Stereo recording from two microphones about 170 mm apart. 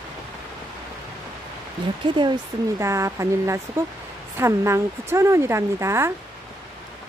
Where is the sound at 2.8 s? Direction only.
15° right (ahead or behind).